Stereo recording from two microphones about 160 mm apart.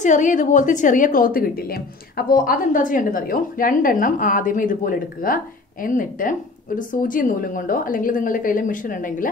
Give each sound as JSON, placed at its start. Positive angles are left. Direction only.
{"t": 0.0, "sound": "a woman's voice", "side_deg": 50}